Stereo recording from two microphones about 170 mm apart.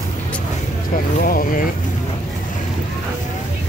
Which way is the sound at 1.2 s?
55° left (ahead or behind).